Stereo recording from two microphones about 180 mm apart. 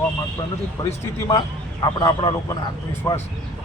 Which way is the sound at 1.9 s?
20° left (ahead or behind).